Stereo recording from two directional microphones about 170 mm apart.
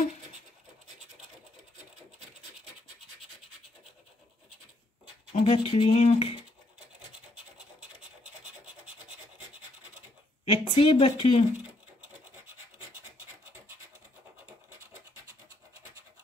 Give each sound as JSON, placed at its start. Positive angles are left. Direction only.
{"t": 5.3, "sound": "speech", "side_deg": 35}
{"t": 10.4, "sound": "speech", "side_deg": 30}